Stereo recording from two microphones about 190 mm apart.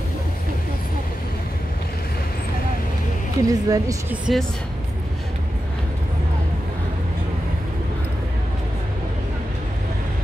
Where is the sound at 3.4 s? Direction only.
15° right (ahead or behind).